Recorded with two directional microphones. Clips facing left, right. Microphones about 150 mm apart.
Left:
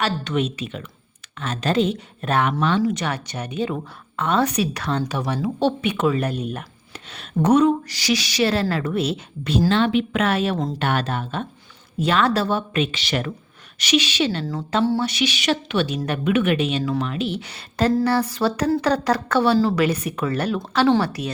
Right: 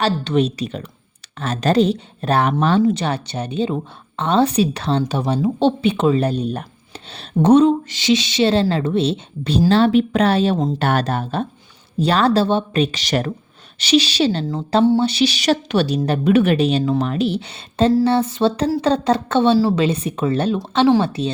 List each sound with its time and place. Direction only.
0.0 s a woman's voice: 35° right (ahead or behind)